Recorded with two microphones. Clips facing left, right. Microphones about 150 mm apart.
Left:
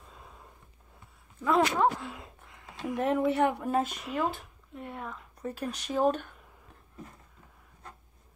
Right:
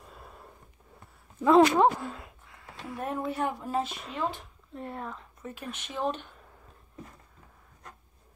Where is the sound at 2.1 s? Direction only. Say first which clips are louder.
Even; 20° left (ahead or behind).